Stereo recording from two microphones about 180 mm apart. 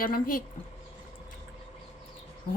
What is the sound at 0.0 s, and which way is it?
Speech, 50° left (ahead or behind).